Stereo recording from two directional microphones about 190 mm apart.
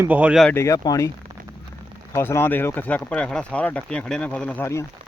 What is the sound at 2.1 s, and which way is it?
Speech, 10° left (ahead or behind).